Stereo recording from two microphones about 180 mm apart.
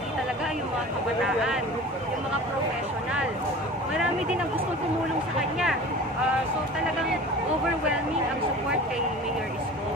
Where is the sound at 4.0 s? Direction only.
5° right (ahead or behind).